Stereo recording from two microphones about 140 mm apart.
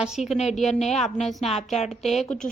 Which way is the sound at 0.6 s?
50° left (ahead or behind).